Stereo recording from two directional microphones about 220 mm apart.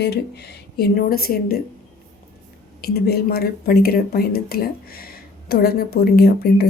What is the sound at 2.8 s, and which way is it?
Speech, 45° left (ahead or behind).